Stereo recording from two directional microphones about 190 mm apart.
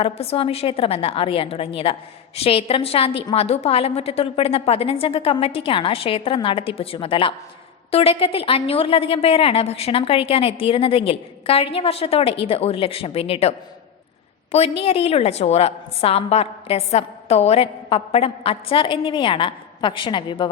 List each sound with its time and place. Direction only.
0.0 s a woman's voice: 30° left (ahead or behind)
14.5 s a woman's voice: 30° left (ahead or behind)